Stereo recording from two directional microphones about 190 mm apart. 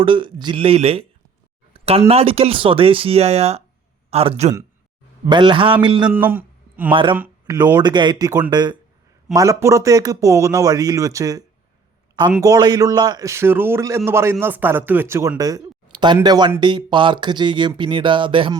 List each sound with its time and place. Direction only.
0.0 s speech: 25° right (ahead or behind)
6.1 s a man's voice: 10° right (ahead or behind)
6.9 s speech: 25° right (ahead or behind)
7.2 s speech: 10° right (ahead or behind)
7.8 s a man's voice: 25° right (ahead or behind)